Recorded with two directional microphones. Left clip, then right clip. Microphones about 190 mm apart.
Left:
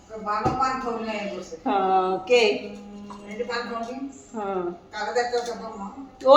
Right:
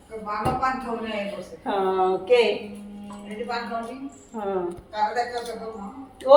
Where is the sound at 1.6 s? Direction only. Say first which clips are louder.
Left 1 dB; 5° left (ahead or behind).